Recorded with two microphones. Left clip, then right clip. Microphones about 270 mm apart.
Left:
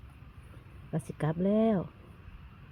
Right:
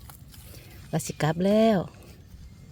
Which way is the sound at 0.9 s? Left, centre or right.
Centre.